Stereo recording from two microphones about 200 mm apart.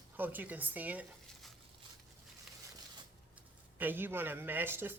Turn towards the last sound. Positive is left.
turn(degrees=-10)  # may be behind; listen again after turning